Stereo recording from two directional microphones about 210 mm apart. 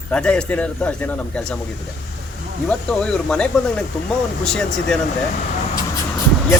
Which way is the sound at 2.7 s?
5° left (ahead or behind).